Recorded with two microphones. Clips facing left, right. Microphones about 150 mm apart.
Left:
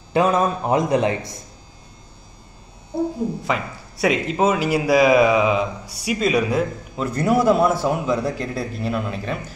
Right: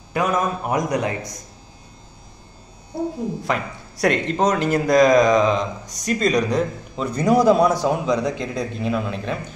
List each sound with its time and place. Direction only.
0.1 s a man's voice: 25° left (ahead or behind)
3.4 s speech: centre (ahead or behind)